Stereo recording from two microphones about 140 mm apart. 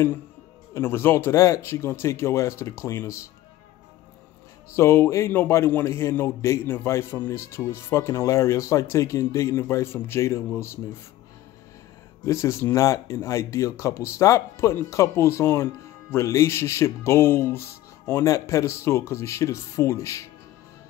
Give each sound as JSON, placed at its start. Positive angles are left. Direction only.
{"t": 0.7, "sound": "speech", "side_deg": 15}
{"t": 4.7, "sound": "speech", "side_deg": 15}
{"t": 12.3, "sound": "speech", "side_deg": 20}